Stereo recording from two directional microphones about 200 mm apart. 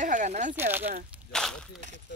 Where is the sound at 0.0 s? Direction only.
40° right (ahead or behind).